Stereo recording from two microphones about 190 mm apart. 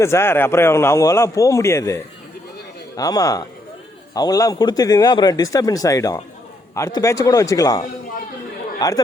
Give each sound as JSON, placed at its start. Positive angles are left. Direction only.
{"t": 0.0, "sound": "a man's voice", "side_deg": 15}